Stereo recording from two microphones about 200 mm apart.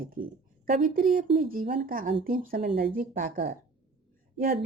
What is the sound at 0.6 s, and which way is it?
Speech, 45° right (ahead or behind).